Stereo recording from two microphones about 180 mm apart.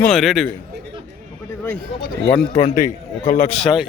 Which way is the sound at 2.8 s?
45° left (ahead or behind).